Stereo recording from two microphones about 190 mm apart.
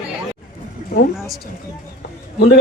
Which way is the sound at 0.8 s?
50° left (ahead or behind).